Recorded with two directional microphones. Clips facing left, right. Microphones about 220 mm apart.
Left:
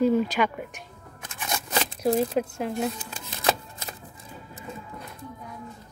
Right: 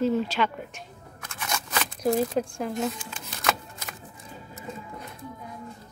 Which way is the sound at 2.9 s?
35° left (ahead or behind).